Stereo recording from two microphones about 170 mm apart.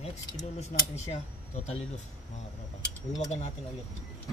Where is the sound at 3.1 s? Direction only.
40° left (ahead or behind).